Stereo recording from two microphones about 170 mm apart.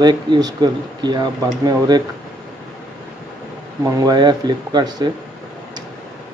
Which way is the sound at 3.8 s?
25° right (ahead or behind).